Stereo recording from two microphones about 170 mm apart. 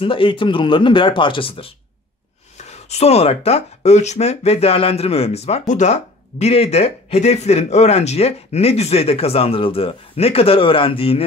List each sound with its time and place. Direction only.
0.0 s speech: 30° left (ahead or behind)